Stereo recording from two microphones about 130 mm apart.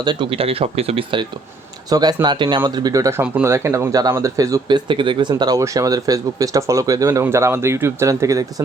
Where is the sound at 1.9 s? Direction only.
30° right (ahead or behind).